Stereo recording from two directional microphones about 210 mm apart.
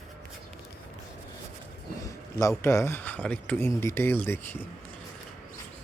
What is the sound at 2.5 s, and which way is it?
Speech, 10° left (ahead or behind).